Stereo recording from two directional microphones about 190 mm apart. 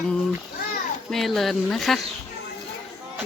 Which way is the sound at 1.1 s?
Centre (ahead or behind).